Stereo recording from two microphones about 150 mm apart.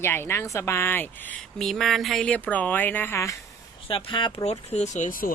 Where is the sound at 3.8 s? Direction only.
35° left (ahead or behind); by 5.3 s 60° left (ahead or behind).